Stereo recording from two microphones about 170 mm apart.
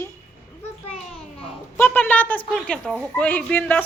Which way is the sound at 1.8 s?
10° left (ahead or behind).